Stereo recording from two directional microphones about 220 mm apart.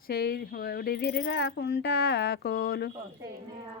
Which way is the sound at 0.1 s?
45° left (ahead or behind).